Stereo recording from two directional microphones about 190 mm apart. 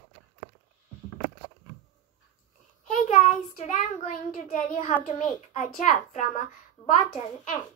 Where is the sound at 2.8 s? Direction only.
40° left (ahead or behind).